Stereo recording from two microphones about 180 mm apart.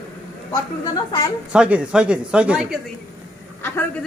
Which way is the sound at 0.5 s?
20° left (ahead or behind).